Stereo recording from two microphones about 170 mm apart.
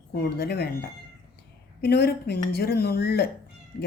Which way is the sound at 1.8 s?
70° left (ahead or behind).